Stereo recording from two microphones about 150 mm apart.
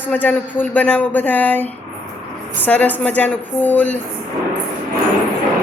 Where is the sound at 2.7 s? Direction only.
10° left (ahead or behind).